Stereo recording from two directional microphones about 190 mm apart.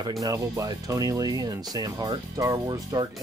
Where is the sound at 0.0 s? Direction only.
20° right (ahead or behind).